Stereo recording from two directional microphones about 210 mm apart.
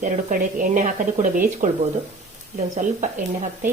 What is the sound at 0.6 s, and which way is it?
A woman's voice, 35° right (ahead or behind).